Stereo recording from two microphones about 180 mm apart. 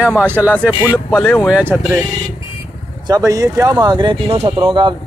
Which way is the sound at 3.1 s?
20° right (ahead or behind).